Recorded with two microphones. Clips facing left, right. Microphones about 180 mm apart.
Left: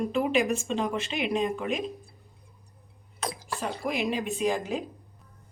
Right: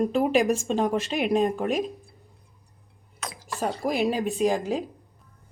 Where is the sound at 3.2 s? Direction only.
30° left (ahead or behind).